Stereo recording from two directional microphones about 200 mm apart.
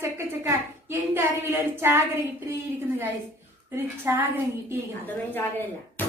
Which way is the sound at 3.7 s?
10° right (ahead or behind).